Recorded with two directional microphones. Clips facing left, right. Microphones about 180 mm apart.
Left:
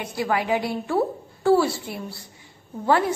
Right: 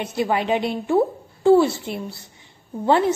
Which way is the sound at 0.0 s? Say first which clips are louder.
Right 3 dB; 25° right (ahead or behind).